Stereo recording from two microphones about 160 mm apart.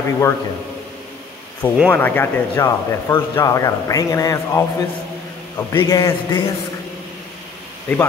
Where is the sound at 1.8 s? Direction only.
10° left (ahead or behind).